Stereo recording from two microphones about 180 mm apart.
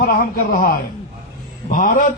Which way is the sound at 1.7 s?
45° left (ahead or behind).